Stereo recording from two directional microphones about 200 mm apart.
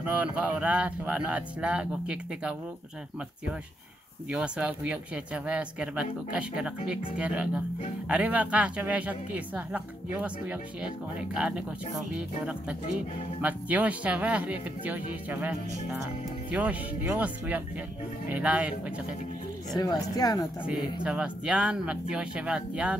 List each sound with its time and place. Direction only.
0.0 s a woman's voice: 5° right (ahead or behind)
4.3 s a woman's voice: 5° right (ahead or behind)
19.8 s speech: 20° left (ahead or behind)
20.6 s speech: 5° right (ahead or behind)